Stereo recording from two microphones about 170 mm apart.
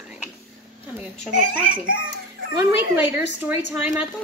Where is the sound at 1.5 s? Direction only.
55° right (ahead or behind).